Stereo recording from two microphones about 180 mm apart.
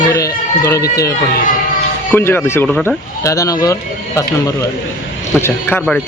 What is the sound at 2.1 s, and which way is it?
Speech, 10° left (ahead or behind).